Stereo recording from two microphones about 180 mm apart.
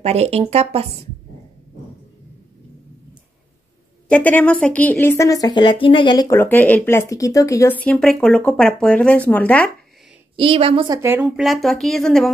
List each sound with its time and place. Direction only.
0.0 s speech: 35° right (ahead or behind)
4.1 s a woman's voice: 10° left (ahead or behind)
10.3 s a woman's voice: 30° right (ahead or behind)
11.0 s a woman's voice: 10° right (ahead or behind)